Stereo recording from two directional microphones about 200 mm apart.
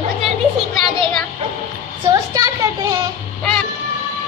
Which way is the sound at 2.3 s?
20° right (ahead or behind).